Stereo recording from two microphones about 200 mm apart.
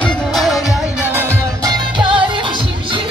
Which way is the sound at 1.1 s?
15° right (ahead or behind).